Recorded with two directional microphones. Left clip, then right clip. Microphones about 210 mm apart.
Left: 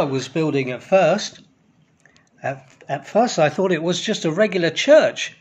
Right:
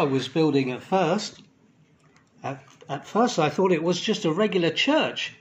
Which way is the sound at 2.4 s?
40° left (ahead or behind).